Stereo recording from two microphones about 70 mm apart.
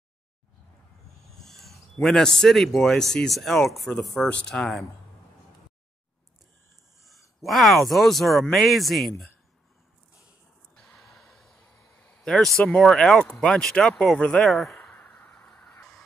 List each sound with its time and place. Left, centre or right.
1.3 s a man's voice: centre
4.3 s speech: centre
4.6 s speech: centre
7.4 s speech: centre
11.0 s gasp: centre
12.0 s speech: centre
14.8 s a sound: left